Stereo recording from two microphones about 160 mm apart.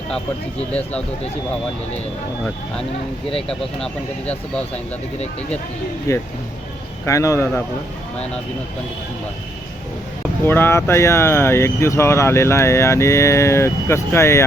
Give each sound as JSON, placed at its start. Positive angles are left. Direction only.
{"t": 3.5, "sound": "speech", "side_deg": 5}
{"t": 6.1, "sound": "speech", "side_deg": 20}
{"t": 10.4, "sound": "speech", "side_deg": 15}